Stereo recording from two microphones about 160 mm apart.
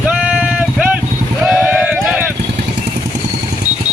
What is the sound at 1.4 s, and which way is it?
Clip-clop, 5° right (ahead or behind).